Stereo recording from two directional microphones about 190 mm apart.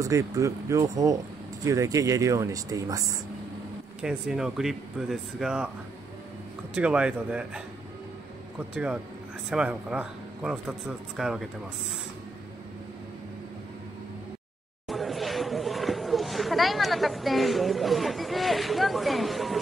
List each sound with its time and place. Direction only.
0.0 s speech: 15° right (ahead or behind)
4.0 s a man's voice: 5° right (ahead or behind)
6.7 s a man's voice: 5° right (ahead or behind)
14.9 s a sound: centre (ahead or behind)